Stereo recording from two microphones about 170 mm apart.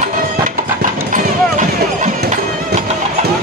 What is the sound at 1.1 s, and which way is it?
Music, 45° right (ahead or behind).